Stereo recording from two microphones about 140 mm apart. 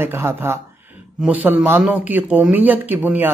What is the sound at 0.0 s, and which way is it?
Speech, 15° right (ahead or behind).